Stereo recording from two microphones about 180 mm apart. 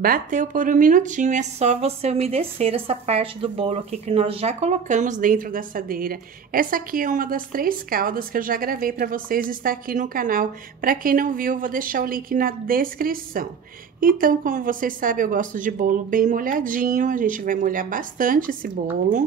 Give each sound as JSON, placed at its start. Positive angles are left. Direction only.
{"t": 0.0, "sound": "speech", "side_deg": -50}